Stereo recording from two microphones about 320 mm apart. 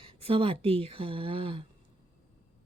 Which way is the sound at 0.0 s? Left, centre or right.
Centre.